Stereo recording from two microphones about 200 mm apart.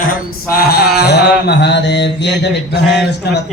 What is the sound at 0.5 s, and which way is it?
Mantra, 50° left (ahead or behind).